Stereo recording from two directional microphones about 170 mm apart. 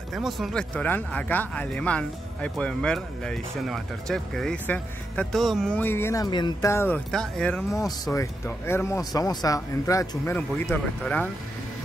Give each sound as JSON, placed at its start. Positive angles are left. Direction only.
{"t": 0.1, "sound": "speech", "side_deg": 0}
{"t": 7.1, "sound": "speech", "side_deg": 5}
{"t": 8.0, "sound": "speech", "side_deg": 20}